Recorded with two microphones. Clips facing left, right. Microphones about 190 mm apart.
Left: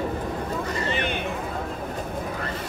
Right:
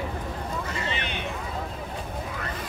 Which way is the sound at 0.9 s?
50° left (ahead or behind).